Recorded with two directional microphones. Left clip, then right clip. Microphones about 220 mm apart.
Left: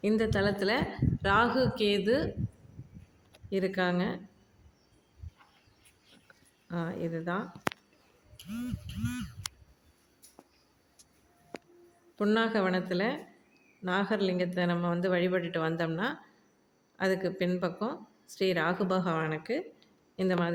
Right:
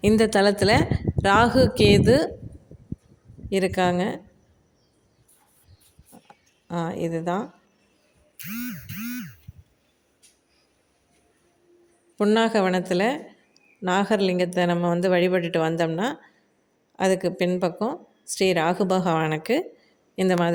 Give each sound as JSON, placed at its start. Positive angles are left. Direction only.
{"t": 0.0, "sound": "speech", "side_deg": -40}
{"t": 3.5, "sound": "speech", "side_deg": -30}
{"t": 6.7, "sound": "speech", "side_deg": -30}
{"t": 12.1, "sound": "speech", "side_deg": -30}